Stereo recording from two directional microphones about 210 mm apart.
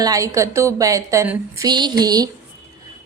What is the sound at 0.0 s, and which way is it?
A woman's voice, 15° right (ahead or behind).